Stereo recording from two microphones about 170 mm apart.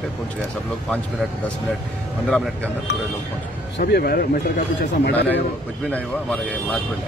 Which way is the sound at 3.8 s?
65° left (ahead or behind).